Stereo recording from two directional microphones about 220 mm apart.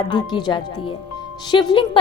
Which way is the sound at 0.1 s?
20° left (ahead or behind).